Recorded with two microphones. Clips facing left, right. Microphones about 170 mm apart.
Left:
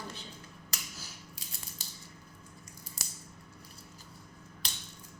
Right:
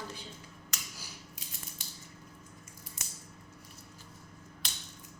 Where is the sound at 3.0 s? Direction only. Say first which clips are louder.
Left 2 dB; 35° left (ahead or behind).